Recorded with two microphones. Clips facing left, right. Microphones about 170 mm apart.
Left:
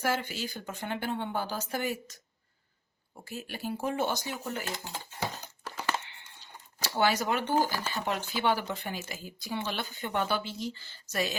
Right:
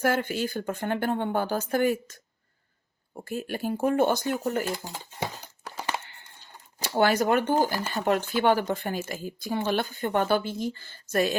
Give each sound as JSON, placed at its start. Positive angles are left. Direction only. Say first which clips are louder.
{"t": 0.0, "sound": "speech", "louder": "right 6 dB", "side_deg": -55}
{"t": 3.2, "sound": "speech", "louder": "right 7 dB", "side_deg": -50}
{"t": 4.6, "sound": "speech", "louder": "right 6 dB", "side_deg": -10}
{"t": 5.4, "sound": "horse", "louder": "right 2 dB", "side_deg": -15}
{"t": 6.8, "sound": "speech", "louder": "right 5 dB", "side_deg": -50}